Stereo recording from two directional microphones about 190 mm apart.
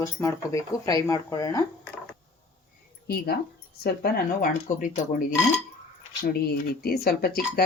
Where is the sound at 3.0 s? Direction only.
55° left (ahead or behind).